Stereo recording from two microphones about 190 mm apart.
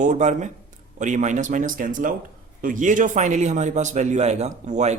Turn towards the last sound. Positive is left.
turn(degrees=-35)  # may be behind; listen again after turning